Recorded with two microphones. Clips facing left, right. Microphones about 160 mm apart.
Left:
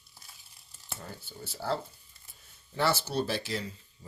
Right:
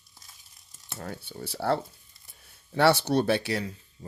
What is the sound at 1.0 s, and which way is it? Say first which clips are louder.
Speech: right 8 dB; 65° right (ahead or behind).